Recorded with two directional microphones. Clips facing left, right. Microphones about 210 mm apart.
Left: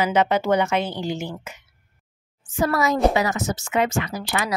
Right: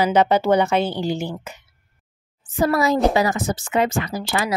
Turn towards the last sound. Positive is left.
turn(degrees=-25)  # may be behind; listen again after turning